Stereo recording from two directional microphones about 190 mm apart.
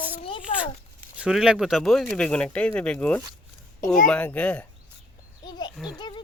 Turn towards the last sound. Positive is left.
turn(degrees=0)  # may be behind; listen again after turning